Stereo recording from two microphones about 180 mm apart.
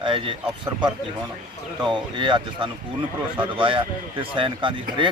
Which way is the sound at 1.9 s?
25° right (ahead or behind).